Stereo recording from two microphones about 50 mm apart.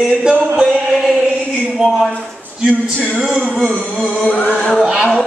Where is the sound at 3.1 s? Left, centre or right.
Right.